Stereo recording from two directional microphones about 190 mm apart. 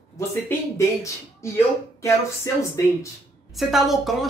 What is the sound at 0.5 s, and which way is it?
Speech, 15° left (ahead or behind).